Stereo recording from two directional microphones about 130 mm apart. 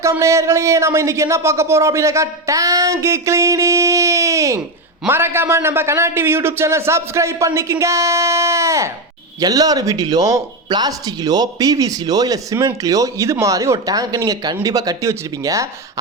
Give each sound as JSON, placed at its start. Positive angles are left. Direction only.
{"t": 0.0, "sound": "speech", "side_deg": -20}